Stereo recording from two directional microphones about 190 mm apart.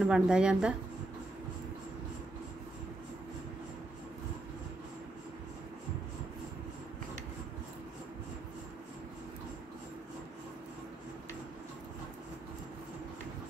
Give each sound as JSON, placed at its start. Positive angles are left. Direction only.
{"t": 0.0, "sound": "a woman's voice", "side_deg": -5}